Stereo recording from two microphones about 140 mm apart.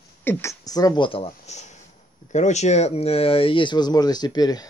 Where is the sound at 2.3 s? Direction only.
55° left (ahead or behind).